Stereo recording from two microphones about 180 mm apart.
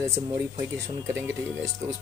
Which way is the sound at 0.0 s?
15° right (ahead or behind).